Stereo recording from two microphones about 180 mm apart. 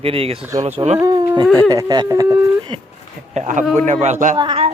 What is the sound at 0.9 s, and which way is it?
Speech, 20° right (ahead or behind).